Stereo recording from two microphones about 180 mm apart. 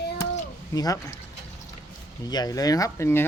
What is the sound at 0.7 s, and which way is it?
Speech, 20° left (ahead or behind).